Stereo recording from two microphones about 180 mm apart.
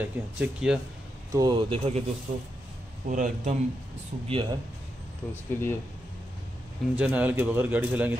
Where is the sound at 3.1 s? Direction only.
45° right (ahead or behind).